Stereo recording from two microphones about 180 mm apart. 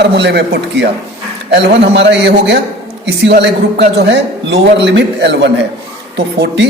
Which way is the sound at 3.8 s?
70° right (ahead or behind).